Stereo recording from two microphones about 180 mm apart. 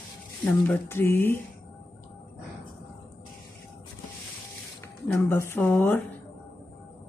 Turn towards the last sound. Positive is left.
turn(degrees=10)  # may be behind; listen again after turning